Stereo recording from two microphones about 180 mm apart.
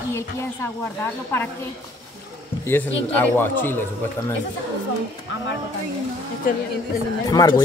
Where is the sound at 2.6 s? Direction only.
10° left (ahead or behind).